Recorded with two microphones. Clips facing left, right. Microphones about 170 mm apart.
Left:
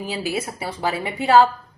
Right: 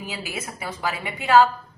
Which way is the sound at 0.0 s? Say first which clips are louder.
Left 7 dB; 35° left (ahead or behind).